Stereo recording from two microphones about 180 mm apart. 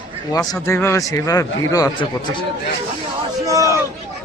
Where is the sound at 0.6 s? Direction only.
15° left (ahead or behind).